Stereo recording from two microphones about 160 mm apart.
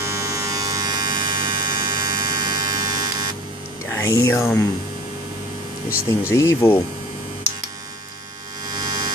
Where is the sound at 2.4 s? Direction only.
25° right (ahead or behind).